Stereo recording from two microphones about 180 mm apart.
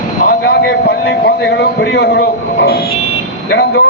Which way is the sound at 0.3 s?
65° left (ahead or behind).